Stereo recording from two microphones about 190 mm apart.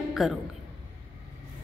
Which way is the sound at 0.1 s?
Centre (ahead or behind).